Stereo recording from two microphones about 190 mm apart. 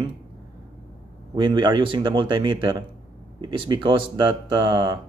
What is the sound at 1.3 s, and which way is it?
Speech, 25° right (ahead or behind).